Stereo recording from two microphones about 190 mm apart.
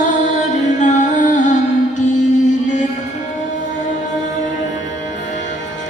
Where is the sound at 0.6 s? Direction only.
40° left (ahead or behind).